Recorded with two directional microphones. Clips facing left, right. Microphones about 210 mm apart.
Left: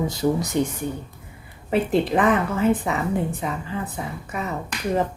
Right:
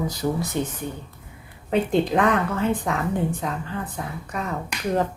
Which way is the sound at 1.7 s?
5° left (ahead or behind).